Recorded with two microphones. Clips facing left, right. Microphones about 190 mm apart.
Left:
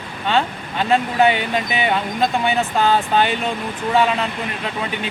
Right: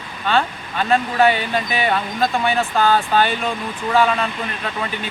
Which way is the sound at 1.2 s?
20° left (ahead or behind).